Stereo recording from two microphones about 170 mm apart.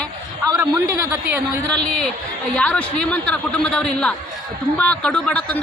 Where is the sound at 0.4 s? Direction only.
20° right (ahead or behind).